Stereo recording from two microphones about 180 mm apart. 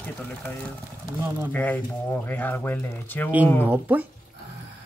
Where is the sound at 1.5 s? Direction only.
10° left (ahead or behind).